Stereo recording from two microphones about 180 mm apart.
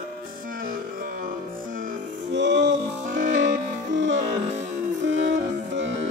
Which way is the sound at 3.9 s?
80° right.